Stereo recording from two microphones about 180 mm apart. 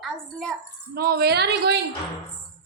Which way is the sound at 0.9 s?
55° right (ahead or behind).